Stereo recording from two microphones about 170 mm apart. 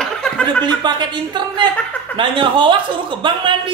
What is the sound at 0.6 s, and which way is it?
Speech, 25° right (ahead or behind).